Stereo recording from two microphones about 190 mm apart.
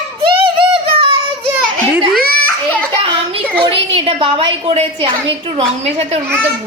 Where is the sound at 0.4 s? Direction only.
25° right (ahead or behind).